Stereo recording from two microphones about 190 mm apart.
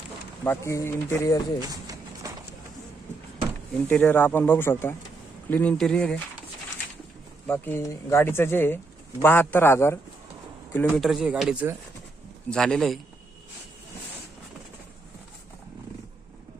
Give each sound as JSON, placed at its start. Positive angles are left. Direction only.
{"t": 0.4, "sound": "speech", "side_deg": 15}
{"t": 1.6, "sound": "a sound", "side_deg": -20}
{"t": 3.8, "sound": "speech", "side_deg": 10}
{"t": 7.4, "sound": "speech", "side_deg": 10}